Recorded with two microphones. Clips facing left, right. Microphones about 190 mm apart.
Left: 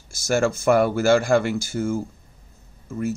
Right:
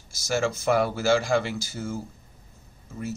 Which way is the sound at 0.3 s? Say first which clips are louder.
Left 5 dB; 50° left (ahead or behind).